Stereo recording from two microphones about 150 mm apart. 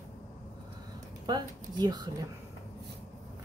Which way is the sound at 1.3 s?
30° right (ahead or behind).